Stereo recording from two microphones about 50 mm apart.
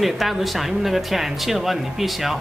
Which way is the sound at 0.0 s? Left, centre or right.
Centre.